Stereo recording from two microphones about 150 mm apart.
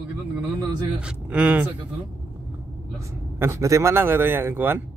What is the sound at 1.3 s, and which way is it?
Speech, 10° right (ahead or behind).